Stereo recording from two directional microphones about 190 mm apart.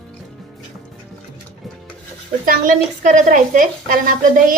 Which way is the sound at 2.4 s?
45° right (ahead or behind).